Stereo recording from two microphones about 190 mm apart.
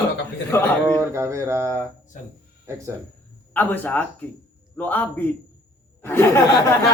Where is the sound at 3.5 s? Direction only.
10° left (ahead or behind).